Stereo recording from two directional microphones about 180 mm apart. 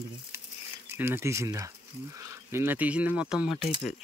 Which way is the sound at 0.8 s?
10° right (ahead or behind).